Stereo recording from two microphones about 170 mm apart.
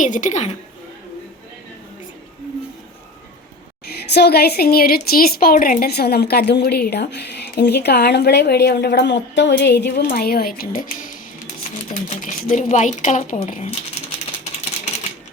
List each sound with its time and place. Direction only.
0.0 s speech: 50° left (ahead or behind)
3.8 s a woman's voice: 75° left (ahead or behind); by 14.0 s 40° left (ahead or behind)